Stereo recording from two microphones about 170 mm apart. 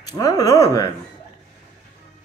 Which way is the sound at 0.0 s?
20° left (ahead or behind).